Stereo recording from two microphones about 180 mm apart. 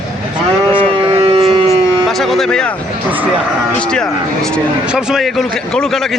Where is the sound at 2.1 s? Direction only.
Centre (ahead or behind).